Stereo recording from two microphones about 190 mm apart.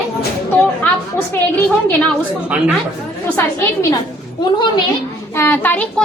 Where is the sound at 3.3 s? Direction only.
15° left (ahead or behind).